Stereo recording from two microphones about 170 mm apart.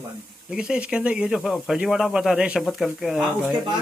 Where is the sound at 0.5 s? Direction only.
5° right (ahead or behind).